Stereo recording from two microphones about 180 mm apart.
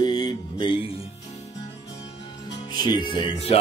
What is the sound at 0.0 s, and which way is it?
Music, 20° left (ahead or behind).